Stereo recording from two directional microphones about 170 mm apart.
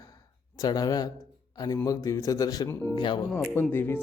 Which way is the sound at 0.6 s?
20° left (ahead or behind).